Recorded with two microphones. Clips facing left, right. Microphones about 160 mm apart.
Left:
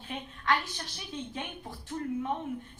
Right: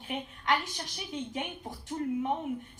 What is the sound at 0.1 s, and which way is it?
A woman's voice, 15° right (ahead or behind).